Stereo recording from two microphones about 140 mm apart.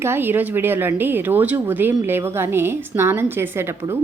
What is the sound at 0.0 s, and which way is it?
Speech, 15° right (ahead or behind).